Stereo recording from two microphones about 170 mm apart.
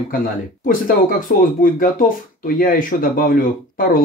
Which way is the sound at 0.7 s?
55° left (ahead or behind).